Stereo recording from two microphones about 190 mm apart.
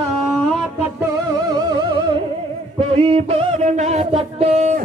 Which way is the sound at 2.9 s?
30° right (ahead or behind).